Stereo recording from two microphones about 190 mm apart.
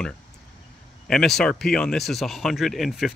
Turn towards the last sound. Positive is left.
turn(degrees=0)  # may be behind; listen again after turning